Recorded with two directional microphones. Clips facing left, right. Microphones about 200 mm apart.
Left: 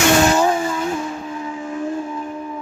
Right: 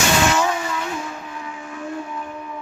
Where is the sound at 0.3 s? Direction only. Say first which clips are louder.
Left 4 dB; 35° left (ahead or behind).